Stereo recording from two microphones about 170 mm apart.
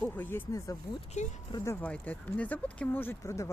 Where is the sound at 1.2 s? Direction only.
45° left (ahead or behind).